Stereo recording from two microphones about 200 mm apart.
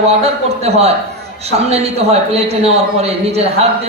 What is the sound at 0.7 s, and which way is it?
Speech, 30° right (ahead or behind).